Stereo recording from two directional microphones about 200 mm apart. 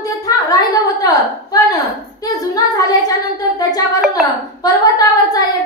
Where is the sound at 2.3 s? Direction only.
20° left (ahead or behind).